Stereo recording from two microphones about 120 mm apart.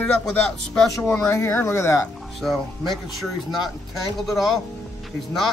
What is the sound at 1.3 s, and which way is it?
Speech, 20° left (ahead or behind).